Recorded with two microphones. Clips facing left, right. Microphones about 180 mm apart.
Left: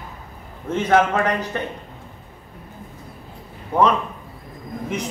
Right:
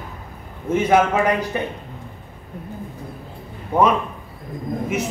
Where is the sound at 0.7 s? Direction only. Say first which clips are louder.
Right 1 dB; 10° right (ahead or behind).